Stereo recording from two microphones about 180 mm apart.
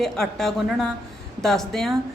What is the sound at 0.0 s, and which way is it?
Speech, centre (ahead or behind).